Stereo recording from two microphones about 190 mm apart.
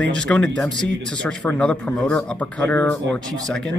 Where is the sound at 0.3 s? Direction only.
5° left (ahead or behind).